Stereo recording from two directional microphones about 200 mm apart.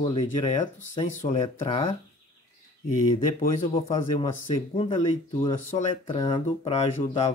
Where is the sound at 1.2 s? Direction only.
30° left (ahead or behind).